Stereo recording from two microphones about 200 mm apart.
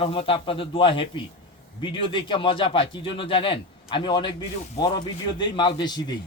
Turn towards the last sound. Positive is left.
turn(degrees=20)  # may be behind; listen again after turning